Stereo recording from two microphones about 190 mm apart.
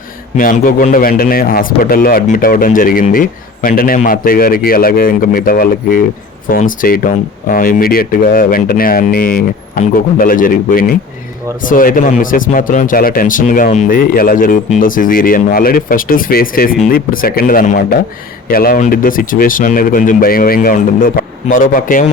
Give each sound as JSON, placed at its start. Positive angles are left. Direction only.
{"t": 0.3, "sound": "a man's voice", "side_deg": 45}